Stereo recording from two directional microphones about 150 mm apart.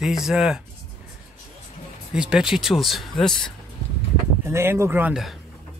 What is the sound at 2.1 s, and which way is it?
Speech, 5° right (ahead or behind).